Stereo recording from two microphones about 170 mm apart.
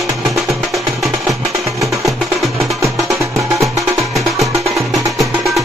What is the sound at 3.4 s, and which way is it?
Music, centre (ahead or behind).